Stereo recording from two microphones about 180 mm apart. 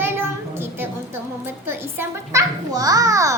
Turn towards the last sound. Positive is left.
turn(degrees=-20)  # may be behind; listen again after turning